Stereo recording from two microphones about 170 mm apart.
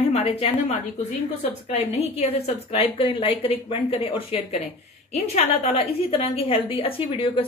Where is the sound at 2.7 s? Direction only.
30° left (ahead or behind).